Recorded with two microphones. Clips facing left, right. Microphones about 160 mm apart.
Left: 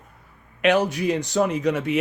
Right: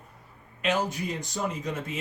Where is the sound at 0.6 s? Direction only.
70° left (ahead or behind).